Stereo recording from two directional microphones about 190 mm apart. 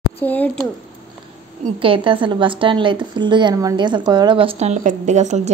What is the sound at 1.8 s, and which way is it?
A woman's voice, 25° right (ahead or behind).